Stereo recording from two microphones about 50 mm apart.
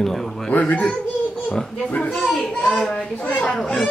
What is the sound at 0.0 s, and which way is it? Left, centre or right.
Speech, centre.